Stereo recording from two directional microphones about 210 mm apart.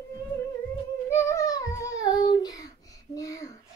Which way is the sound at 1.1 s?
15° left (ahead or behind).